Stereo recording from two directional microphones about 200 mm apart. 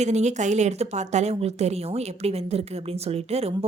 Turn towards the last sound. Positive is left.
turn(degrees=-30)  # may be behind; listen again after turning